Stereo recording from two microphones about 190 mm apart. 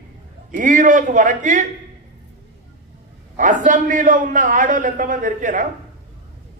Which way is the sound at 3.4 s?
45° right (ahead or behind).